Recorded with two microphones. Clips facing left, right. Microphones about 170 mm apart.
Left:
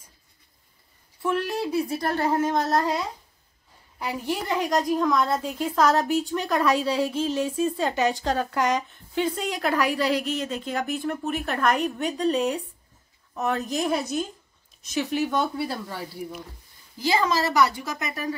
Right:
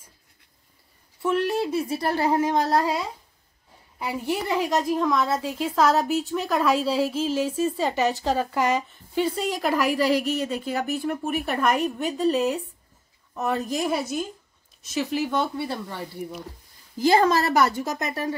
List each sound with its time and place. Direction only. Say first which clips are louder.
1.2 s a woman's voice: right 3 dB; 5° right (ahead or behind)
4.0 s a woman's voice: right 2 dB; 5° right (ahead or behind)
17.0 s a woman's voice: right 4 dB; 50° right (ahead or behind)